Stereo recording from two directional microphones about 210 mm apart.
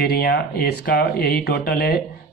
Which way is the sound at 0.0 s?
50° left (ahead or behind).